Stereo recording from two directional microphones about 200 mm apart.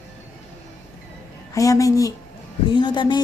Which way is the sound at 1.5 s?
15° left (ahead or behind).